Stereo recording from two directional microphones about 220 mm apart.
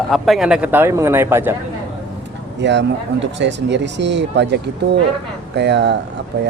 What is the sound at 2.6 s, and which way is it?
Speech, 55° right (ahead or behind).